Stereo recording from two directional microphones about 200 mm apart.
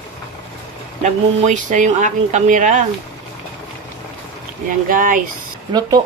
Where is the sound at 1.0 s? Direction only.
35° right (ahead or behind).